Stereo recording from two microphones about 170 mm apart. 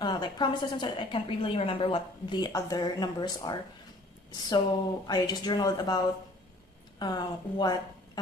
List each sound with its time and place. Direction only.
0.0 s a woman's voice: 25° left (ahead or behind)
5.0 s a woman's voice: 25° left (ahead or behind)